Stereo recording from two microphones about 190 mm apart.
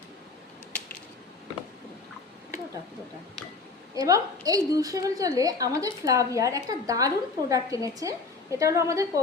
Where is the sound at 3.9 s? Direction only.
20° right (ahead or behind).